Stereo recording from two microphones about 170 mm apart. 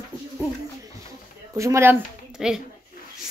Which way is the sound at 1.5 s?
15° right (ahead or behind).